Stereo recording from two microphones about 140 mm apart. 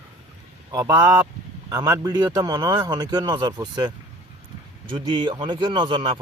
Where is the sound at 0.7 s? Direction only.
20° right (ahead or behind).